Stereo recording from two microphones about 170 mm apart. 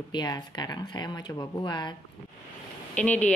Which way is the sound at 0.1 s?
25° left (ahead or behind).